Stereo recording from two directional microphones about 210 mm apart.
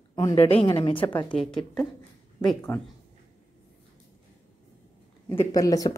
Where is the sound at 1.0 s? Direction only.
10° left (ahead or behind).